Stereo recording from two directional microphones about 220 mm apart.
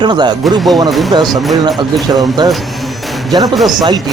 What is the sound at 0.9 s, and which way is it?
Speech, centre (ahead or behind).